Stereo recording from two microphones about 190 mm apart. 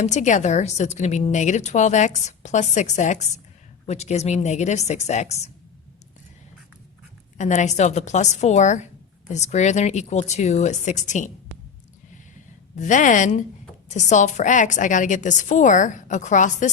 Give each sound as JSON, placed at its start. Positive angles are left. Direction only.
{"t": 0.0, "sound": "a woman's voice", "side_deg": 40}
{"t": 7.3, "sound": "a woman's voice", "side_deg": 40}
{"t": 12.7, "sound": "a woman's voice", "side_deg": 40}